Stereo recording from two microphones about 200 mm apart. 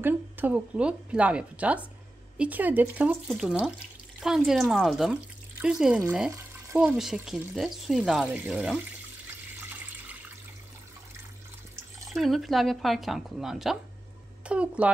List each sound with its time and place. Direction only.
0.0 s speech: 10° right (ahead or behind)
12.1 s a child's voice: centre (ahead or behind)